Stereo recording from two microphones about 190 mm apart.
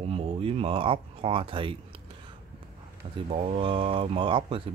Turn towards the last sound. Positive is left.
turn(degrees=-25)  # may be behind; listen again after turning